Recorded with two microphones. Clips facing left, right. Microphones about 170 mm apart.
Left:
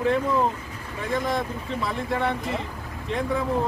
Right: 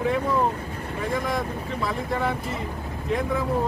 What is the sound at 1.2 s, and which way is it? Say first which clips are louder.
Speech: even; centre (ahead or behind).